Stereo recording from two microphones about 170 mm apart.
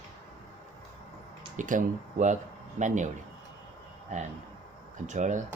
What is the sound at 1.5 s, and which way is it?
Speech, 50° right (ahead or behind).